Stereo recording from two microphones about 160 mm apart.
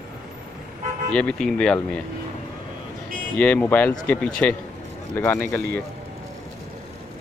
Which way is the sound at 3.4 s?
10° left (ahead or behind).